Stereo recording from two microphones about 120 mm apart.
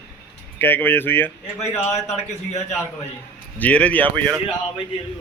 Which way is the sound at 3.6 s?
10° left (ahead or behind).